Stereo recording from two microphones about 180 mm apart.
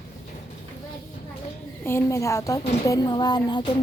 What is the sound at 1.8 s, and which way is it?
A woman's voice, 15° left (ahead or behind).